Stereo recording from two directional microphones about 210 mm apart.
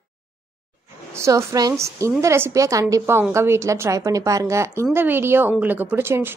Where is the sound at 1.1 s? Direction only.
15° right (ahead or behind).